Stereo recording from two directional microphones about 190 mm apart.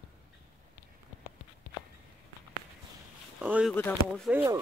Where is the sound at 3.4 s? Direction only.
5° right (ahead or behind).